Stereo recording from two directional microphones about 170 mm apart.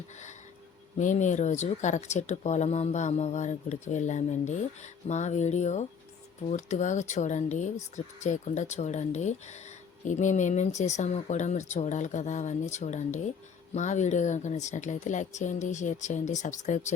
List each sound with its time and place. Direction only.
0.9 s speech: 45° left (ahead or behind)